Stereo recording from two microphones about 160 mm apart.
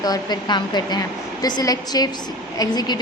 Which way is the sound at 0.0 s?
25° left (ahead or behind).